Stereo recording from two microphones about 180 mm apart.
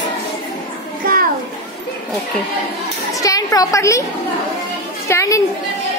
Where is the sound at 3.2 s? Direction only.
20° left (ahead or behind).